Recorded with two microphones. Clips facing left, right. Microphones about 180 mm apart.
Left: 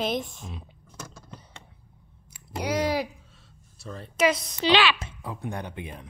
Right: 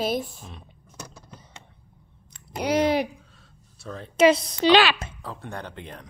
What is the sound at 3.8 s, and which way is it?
Speech, centre (ahead or behind).